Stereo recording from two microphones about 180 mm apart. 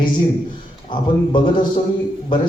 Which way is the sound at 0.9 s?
25° left (ahead or behind).